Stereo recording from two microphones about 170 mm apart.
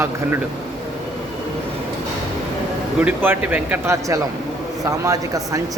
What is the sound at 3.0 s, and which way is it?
Speech, 10° right (ahead or behind).